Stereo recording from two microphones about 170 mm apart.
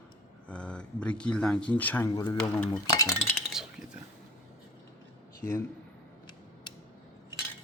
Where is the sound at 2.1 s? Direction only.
20° left (ahead or behind).